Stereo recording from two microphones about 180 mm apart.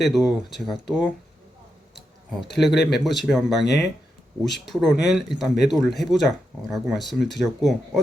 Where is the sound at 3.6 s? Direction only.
70° left (ahead or behind).